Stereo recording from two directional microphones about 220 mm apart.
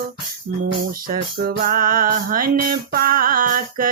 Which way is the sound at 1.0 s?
45° right (ahead or behind).